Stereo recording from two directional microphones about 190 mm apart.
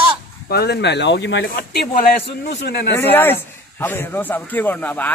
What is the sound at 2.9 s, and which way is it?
A man's voice, 10° left (ahead or behind).